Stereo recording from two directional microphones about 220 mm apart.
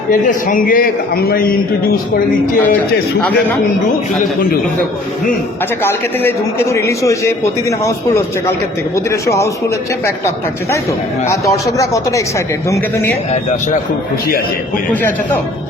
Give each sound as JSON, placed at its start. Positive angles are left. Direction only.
{"t": 0.1, "sound": "a man's voice", "side_deg": 40}
{"t": 5.8, "sound": "a man's voice", "side_deg": 10}
{"t": 11.3, "sound": "a man's voice", "side_deg": 15}